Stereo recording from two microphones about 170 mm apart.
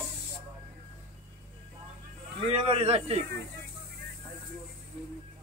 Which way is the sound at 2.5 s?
35° right (ahead or behind).